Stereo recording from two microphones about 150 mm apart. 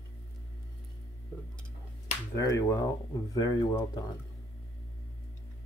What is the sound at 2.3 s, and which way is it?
Speech, 25° left (ahead or behind).